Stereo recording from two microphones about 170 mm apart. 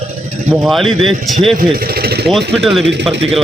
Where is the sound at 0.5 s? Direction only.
Centre (ahead or behind).